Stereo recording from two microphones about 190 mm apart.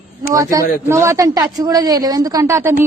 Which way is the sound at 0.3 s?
15° right (ahead or behind).